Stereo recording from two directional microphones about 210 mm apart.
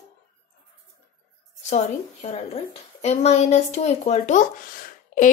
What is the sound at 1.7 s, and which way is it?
A woman's voice, 30° left (ahead or behind).